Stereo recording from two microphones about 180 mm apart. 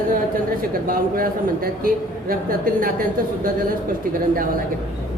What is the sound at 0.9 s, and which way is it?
A woman's voice, 50° right (ahead or behind).